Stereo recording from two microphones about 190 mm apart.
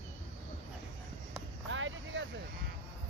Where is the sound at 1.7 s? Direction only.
85° right.